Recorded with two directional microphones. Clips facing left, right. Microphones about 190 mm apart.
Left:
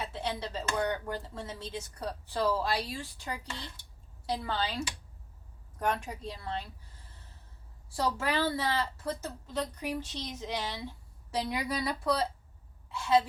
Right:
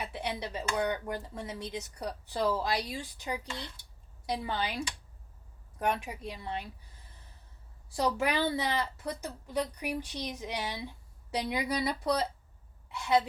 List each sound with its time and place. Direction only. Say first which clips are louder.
0.0 s a woman's voice: left 1 dB; 15° right (ahead or behind)
5.8 s a woman's voice: even; 10° right (ahead or behind)
8.2 s a woman's voice: right 1 dB; 15° right (ahead or behind)